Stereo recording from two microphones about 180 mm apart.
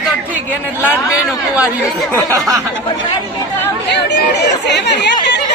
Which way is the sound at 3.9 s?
70° left (ahead or behind).